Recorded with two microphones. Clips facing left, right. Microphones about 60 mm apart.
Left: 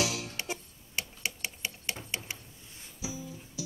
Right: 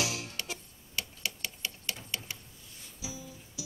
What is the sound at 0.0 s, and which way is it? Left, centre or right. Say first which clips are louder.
Music: left 3 dB; right.